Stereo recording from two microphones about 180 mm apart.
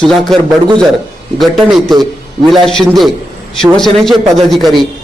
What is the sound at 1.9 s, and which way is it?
Speech, 20° right (ahead or behind).